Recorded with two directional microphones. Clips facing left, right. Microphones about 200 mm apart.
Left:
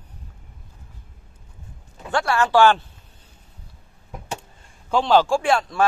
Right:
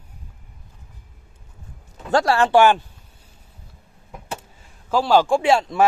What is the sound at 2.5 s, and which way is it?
Speech, 15° right (ahead or behind).